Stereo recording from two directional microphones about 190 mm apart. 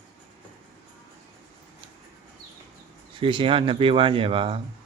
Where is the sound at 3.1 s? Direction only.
25° right (ahead or behind).